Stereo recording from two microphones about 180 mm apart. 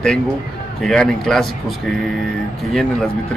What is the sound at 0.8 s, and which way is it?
A man's voice, 5° left (ahead or behind).